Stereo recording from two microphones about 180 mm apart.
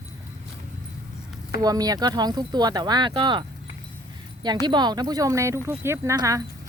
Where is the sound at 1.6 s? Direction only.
20° right (ahead or behind).